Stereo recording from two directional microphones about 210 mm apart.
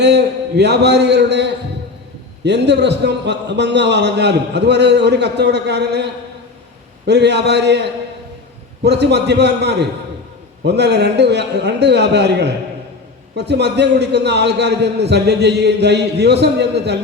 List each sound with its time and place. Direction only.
0.0 s a man's voice: 55° right (ahead or behind)
7.1 s a man's voice: 55° right (ahead or behind)